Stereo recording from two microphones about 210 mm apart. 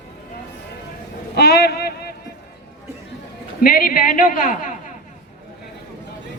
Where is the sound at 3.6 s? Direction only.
45° left (ahead or behind).